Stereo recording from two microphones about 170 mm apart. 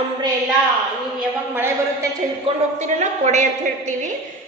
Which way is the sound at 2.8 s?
45° right (ahead or behind).